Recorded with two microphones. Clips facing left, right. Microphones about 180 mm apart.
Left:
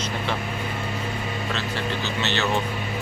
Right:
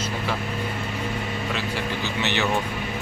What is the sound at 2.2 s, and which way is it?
Speech, 15° right (ahead or behind).